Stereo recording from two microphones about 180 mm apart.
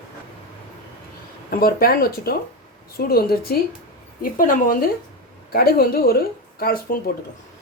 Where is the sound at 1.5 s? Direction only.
55° left (ahead or behind).